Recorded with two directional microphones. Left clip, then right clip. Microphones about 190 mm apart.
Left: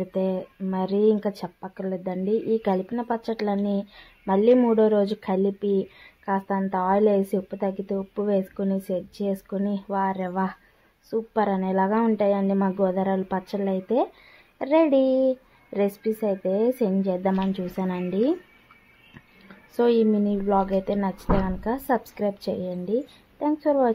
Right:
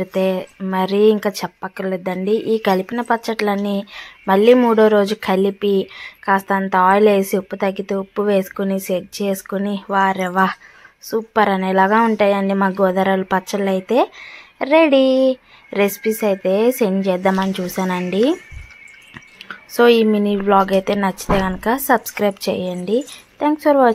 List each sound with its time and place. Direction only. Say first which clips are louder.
0.0 s speech: right 8 dB; 20° right (ahead or behind)
19.7 s speech: right 8 dB; 15° right (ahead or behind)